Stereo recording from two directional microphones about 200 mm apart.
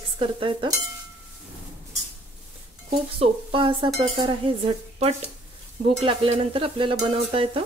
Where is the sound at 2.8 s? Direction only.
30° right (ahead or behind).